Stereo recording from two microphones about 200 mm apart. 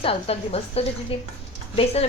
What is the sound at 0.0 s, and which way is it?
Speech, 30° left (ahead or behind).